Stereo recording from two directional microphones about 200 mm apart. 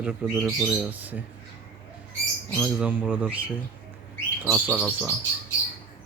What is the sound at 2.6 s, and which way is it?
Speech, 10° right (ahead or behind).